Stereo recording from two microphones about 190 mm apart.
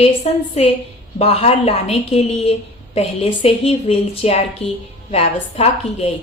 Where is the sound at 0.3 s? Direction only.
35° left (ahead or behind).